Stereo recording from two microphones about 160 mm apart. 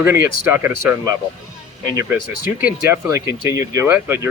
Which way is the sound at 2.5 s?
15° right (ahead or behind).